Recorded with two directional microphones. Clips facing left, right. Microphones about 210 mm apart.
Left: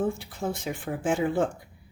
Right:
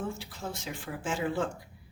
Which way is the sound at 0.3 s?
55° left (ahead or behind).